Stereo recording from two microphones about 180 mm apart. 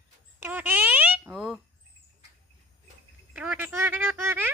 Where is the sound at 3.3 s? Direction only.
10° right (ahead or behind).